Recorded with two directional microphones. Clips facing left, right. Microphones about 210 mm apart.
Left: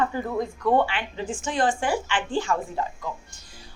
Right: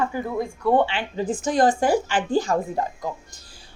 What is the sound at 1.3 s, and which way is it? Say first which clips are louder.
A woman's voice: right 5 dB; 40° right (ahead or behind).